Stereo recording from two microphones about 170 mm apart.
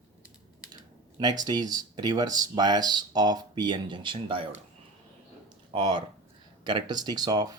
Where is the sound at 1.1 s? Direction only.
25° right (ahead or behind).